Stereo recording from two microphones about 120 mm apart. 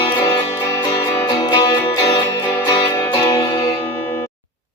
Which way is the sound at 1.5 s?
35° left (ahead or behind).